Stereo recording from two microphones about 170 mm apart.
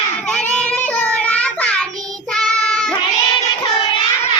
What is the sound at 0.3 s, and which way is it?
Child singing, 5° left (ahead or behind).